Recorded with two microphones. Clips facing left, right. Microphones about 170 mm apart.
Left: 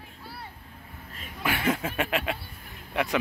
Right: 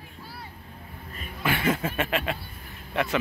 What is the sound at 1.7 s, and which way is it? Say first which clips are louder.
Speech: right 1 dB; 10° left (ahead or behind).